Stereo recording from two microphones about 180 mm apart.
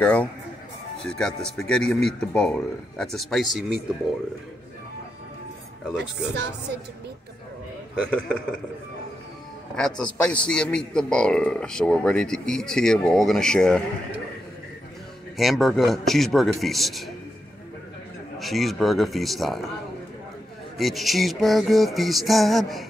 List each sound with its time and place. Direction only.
0.0 s a man's voice: 10° left (ahead or behind)
5.9 s speech: 70° right (ahead or behind)
9.8 s a man's voice: 5° left (ahead or behind)
15.3 s a man's voice: centre (ahead or behind)
18.4 s a man's voice: centre (ahead or behind)
20.7 s a man's voice: centre (ahead or behind)